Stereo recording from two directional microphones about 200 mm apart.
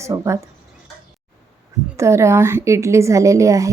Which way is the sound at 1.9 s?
15° right (ahead or behind).